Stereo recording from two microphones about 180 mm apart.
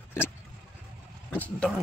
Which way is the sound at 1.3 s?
10° left (ahead or behind).